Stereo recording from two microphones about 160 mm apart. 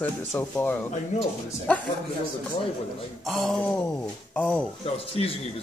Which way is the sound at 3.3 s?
Centre (ahead or behind).